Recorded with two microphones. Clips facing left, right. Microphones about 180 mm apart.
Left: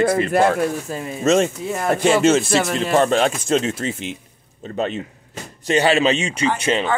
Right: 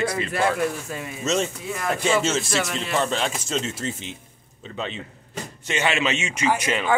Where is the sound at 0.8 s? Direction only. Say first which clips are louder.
Left 5 dB; 35° left (ahead or behind).